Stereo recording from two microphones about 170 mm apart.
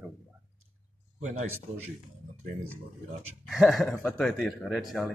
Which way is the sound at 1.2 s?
45° right (ahead or behind).